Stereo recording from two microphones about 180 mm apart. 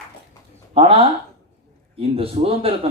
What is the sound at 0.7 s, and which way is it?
Speech, 30° right (ahead or behind).